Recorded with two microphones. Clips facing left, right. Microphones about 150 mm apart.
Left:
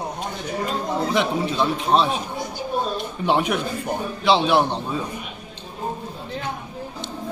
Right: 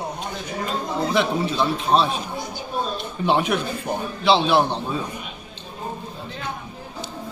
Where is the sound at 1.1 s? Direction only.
15° left (ahead or behind).